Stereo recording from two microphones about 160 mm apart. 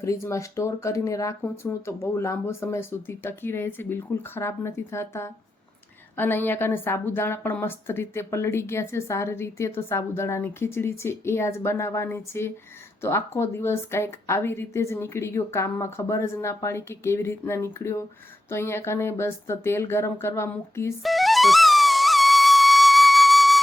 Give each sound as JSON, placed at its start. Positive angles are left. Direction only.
{"t": 0.0, "sound": "a woman's voice", "side_deg": 20}
{"t": 21.0, "sound": "music", "side_deg": 0}